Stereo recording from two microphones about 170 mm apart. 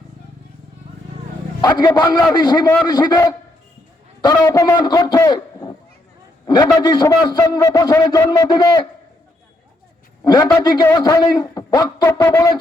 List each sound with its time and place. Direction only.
2.0 s a man's voice: 25° left (ahead or behind)
10.2 s a man's voice: 25° left (ahead or behind)